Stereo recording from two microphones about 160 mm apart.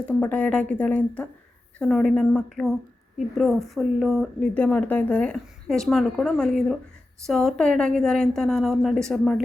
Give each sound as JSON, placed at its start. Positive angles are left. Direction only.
{"t": 0.1, "sound": "a woman's voice", "side_deg": 10}